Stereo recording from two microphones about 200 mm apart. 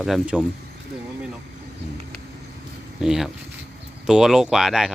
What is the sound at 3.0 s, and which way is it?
A man's voice, centre (ahead or behind).